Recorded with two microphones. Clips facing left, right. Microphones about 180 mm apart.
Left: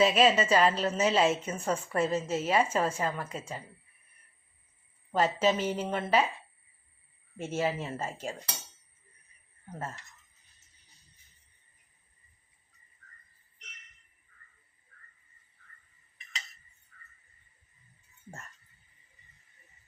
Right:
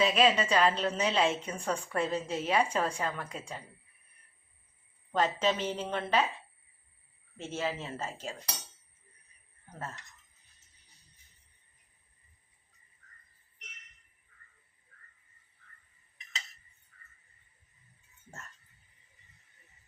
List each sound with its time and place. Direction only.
0.0 s a woman's voice: 5° left (ahead or behind)
5.1 s a woman's voice: 5° left (ahead or behind)
7.3 s a woman's voice: 10° left (ahead or behind)